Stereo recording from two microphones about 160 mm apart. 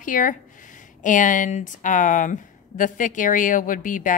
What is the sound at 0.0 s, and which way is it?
A woman's voice, 55° left (ahead or behind).